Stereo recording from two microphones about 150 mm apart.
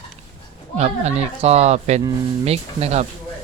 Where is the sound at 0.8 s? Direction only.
45° right (ahead or behind).